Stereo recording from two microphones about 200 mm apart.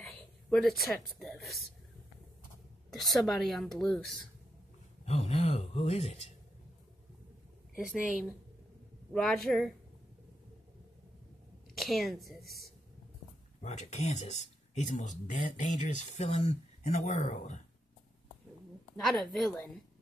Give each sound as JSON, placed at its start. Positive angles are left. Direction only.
{"t": 0.0, "sound": "speech", "side_deg": 0}
{"t": 2.9, "sound": "speech", "side_deg": 0}
{"t": 5.0, "sound": "speech", "side_deg": 30}
{"t": 9.1, "sound": "speech", "side_deg": 5}
{"t": 11.7, "sound": "a woman's voice", "side_deg": 0}
{"t": 13.6, "sound": "speech", "side_deg": 35}
{"t": 18.9, "sound": "speech", "side_deg": 0}